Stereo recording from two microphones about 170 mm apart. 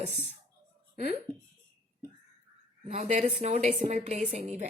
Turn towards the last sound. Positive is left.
turn(degrees=-40)  # may be behind; listen again after turning